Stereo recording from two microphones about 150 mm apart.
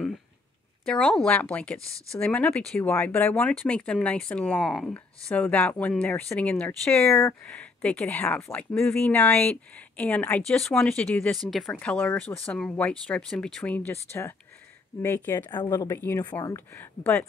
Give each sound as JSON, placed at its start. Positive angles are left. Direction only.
{"t": 0.8, "sound": "speech", "side_deg": 5}
{"t": 15.0, "sound": "speech", "side_deg": 15}